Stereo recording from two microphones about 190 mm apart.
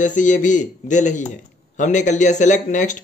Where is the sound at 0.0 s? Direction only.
40° left (ahead or behind).